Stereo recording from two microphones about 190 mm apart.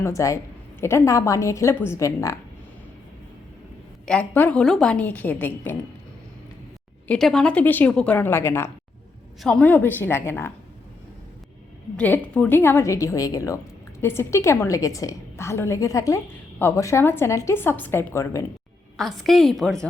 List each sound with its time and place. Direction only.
0.0 s a woman's voice: 15° left (ahead or behind)
4.0 s a woman's voice: 5° left (ahead or behind)
7.1 s a woman's voice: centre (ahead or behind)
11.9 s a woman's voice: 5° left (ahead or behind)
18.9 s a woman's voice: centre (ahead or behind)